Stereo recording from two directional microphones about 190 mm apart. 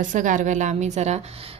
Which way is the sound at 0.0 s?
45° right (ahead or behind).